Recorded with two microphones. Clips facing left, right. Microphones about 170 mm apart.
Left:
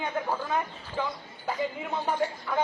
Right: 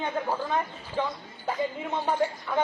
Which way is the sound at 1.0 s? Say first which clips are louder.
Right 2 dB; 20° right (ahead or behind).